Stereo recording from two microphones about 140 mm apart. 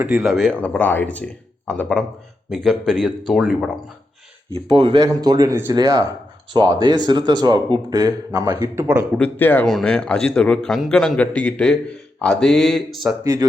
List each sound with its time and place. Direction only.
0.0 s a man's voice: 5° right (ahead or behind)
4.5 s speech: 35° right (ahead or behind); by 9.0 s 20° right (ahead or behind)
9.1 s a man's voice: 10° left (ahead or behind)
13.2 s speech: 25° right (ahead or behind)